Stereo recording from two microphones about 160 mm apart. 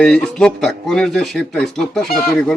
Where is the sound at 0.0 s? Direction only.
5° left (ahead or behind).